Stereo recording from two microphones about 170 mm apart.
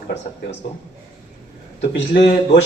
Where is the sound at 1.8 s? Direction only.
75° left (ahead or behind).